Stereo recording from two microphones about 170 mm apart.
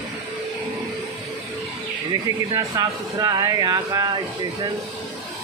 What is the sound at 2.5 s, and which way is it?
Speech, 20° right (ahead or behind).